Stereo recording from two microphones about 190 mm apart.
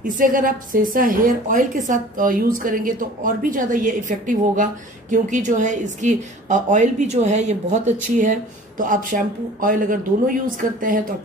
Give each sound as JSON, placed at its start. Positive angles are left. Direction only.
{"t": 0.0, "sound": "a woman's voice", "side_deg": -45}